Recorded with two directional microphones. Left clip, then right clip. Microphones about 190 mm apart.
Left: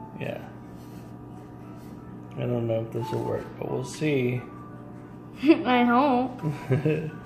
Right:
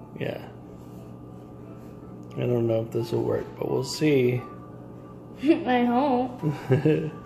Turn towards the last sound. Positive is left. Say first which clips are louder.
# right 4 dB
turn(degrees=-25)  # may be behind; listen again after turning